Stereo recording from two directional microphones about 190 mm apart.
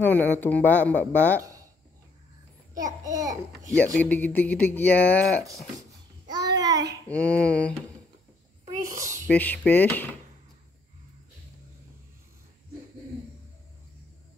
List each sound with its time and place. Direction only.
0.0 s speech: 10° left (ahead or behind)
3.0 s a child's voice: 20° right (ahead or behind)
3.7 s speech: 10° left (ahead or behind)
5.8 s babbling: 20° right (ahead or behind)
7.1 s speech: 5° left (ahead or behind)
9.3 s speech: 10° left (ahead or behind)